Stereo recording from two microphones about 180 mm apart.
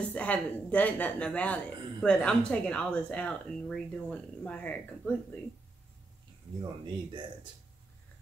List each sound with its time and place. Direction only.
0.1 s speech: 5° left (ahead or behind)
6.8 s speech: 25° right (ahead or behind)